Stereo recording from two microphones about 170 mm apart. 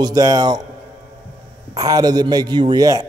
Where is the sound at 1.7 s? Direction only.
20° right (ahead or behind).